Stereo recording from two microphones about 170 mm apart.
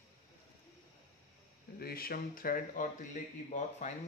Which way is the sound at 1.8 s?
65° left (ahead or behind).